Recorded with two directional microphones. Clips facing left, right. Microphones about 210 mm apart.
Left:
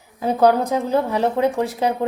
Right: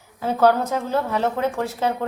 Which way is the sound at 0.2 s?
15° left (ahead or behind).